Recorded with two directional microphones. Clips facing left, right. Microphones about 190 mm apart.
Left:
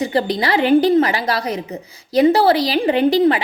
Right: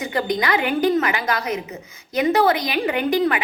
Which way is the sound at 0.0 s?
30° left (ahead or behind).